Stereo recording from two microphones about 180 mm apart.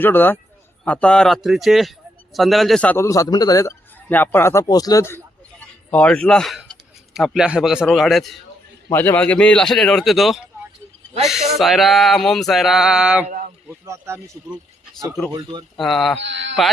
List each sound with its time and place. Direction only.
0.0 s a man's voice: 10° left (ahead or behind)
8.9 s speech: 10° left (ahead or behind); by 13.2 s 5° right (ahead or behind)
13.2 s a sound: 45° right (ahead or behind)
13.7 s speech: 15° right (ahead or behind)
15.8 s speech: centre (ahead or behind)
16.2 s speech: 80° right